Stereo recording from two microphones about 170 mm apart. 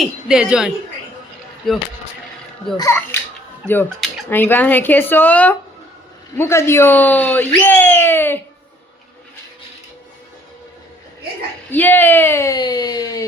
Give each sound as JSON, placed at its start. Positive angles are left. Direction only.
{"t": 0.0, "sound": "speech", "side_deg": -5}
{"t": 2.7, "sound": "speech", "side_deg": 15}
{"t": 4.3, "sound": "speech", "side_deg": 10}
{"t": 11.7, "sound": "speech", "side_deg": 10}